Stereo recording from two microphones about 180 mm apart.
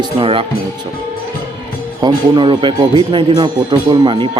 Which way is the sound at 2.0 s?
25° right (ahead or behind).